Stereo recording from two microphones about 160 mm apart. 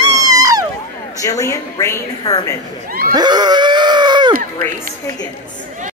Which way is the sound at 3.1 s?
25° right (ahead or behind).